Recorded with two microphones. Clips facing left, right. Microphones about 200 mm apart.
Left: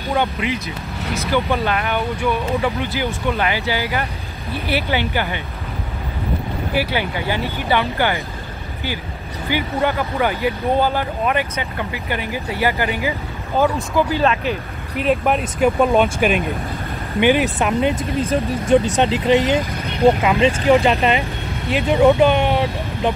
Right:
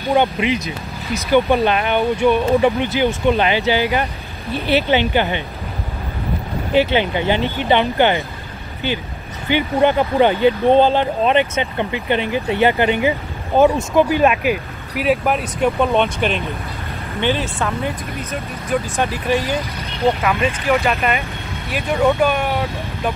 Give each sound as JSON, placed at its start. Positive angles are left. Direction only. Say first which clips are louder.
{"t": 0.1, "sound": "speech", "louder": "right 4 dB", "side_deg": -15}
{"t": 6.7, "sound": "speech", "louder": "right 6 dB", "side_deg": -25}
{"t": 9.5, "sound": "speech", "louder": "right 5 dB", "side_deg": -20}
{"t": 21.6, "sound": "speech", "louder": "left 3 dB", "side_deg": 15}